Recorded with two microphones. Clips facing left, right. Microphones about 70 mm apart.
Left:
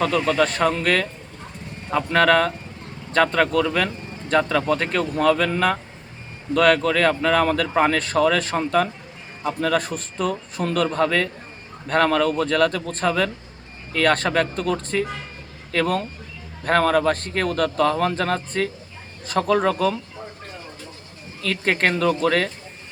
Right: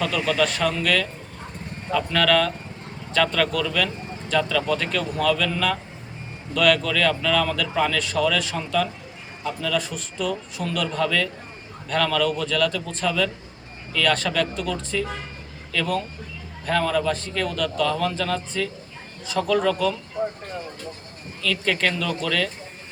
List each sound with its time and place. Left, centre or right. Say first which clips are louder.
0.0 s a man's voice: left 3 dB; left
21.4 s speech: left 2 dB; left